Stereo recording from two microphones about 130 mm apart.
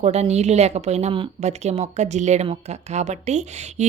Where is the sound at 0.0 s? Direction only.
55° right (ahead or behind).